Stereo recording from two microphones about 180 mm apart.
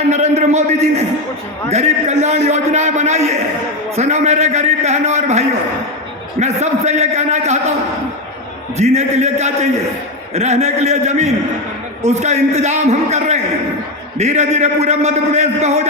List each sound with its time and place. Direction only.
0.1 s a man's voice: 40° right (ahead or behind)
8.8 s a man's voice: 40° right (ahead or behind)